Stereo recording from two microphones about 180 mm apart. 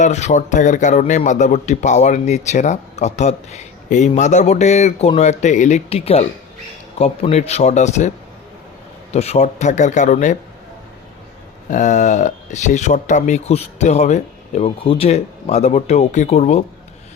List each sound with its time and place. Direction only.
0.0 s speech: 40° left (ahead or behind)
9.1 s speech: 35° left (ahead or behind)
11.7 s speech: 40° left (ahead or behind)